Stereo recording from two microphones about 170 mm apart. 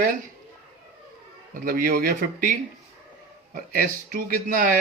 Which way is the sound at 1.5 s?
55° right (ahead or behind).